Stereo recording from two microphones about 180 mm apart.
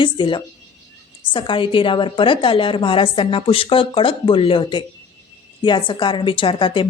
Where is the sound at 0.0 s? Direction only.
25° left (ahead or behind).